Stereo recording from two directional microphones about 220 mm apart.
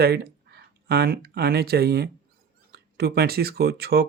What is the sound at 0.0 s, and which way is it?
Speech, 45° right (ahead or behind).